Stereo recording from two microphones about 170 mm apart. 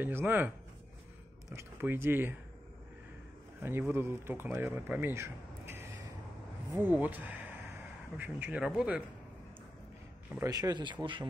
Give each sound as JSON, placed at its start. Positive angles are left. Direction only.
{"t": 0.0, "sound": "speech", "side_deg": -10}
{"t": 1.5, "sound": "speech", "side_deg": -15}
{"t": 3.6, "sound": "speech", "side_deg": -15}
{"t": 10.5, "sound": "speech", "side_deg": -25}